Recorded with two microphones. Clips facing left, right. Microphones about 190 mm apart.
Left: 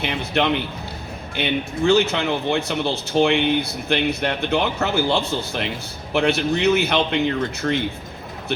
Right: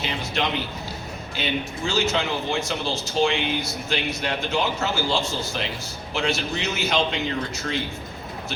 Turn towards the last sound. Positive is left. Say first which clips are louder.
# left 6 dB
turn(degrees=45)  # may be behind; listen again after turning